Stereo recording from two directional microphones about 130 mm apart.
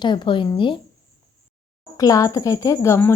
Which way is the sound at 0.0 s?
35° left (ahead or behind).